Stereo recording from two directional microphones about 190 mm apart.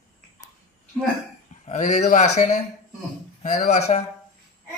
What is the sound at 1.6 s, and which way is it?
Speech, 35° left (ahead or behind).